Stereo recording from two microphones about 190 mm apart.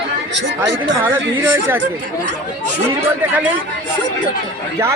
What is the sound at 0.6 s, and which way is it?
Speech, 10° right (ahead or behind).